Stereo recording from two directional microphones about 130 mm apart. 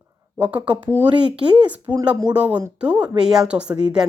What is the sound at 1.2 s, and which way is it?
Speech, 40° right (ahead or behind).